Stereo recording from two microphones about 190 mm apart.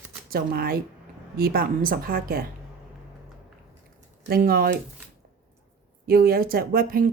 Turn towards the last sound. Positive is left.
turn(degrees=-50)  # may be behind; listen again after turning